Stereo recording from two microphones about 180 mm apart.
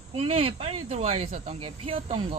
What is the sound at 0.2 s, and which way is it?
Speech, 30° right (ahead or behind).